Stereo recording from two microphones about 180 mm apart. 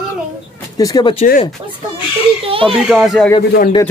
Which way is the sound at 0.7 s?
20° left (ahead or behind).